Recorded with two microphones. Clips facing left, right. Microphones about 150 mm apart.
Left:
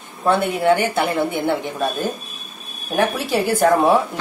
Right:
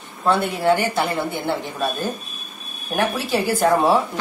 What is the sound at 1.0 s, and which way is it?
Speech, 20° left (ahead or behind).